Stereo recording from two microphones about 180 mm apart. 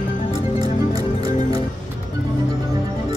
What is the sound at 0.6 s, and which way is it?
Music, 20° right (ahead or behind).